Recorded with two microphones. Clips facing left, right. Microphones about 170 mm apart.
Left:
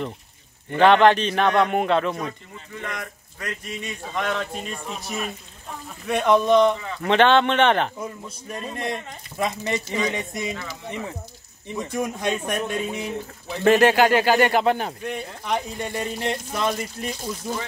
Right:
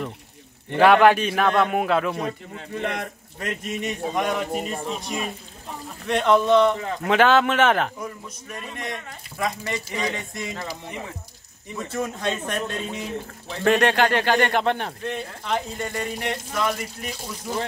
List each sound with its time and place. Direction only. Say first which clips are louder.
0.7 s a man's voice: even; 10° right (ahead or behind)
2.7 s speech: right 5 dB; 30° right (ahead or behind); by 4.5 s 15° right (ahead or behind)
5.0 s a man's voice: right 1 dB; centre (ahead or behind)
6.8 s speech: right 3 dB; 45° right (ahead or behind)
7.1 s a man's voice: left 1 dB; 5° right (ahead or behind)
8.0 s a man's voice: left 1 dB; 30° left (ahead or behind)
10.5 s speech: right 1 dB; 40° right (ahead or behind)
11.7 s speech: left 2 dB; 15° left (ahead or behind)